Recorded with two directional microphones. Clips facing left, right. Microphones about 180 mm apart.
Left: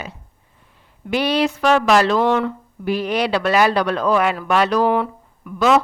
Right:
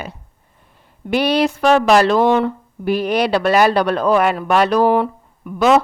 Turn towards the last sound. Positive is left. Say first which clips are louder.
# right 2 dB
turn(degrees=-25)  # may be behind; listen again after turning